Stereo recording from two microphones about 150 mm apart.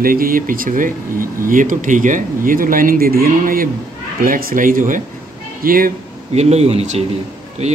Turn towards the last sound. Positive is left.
turn(degrees=-45)  # may be behind; listen again after turning